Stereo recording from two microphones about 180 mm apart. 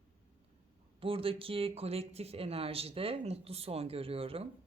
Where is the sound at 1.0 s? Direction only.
30° right (ahead or behind).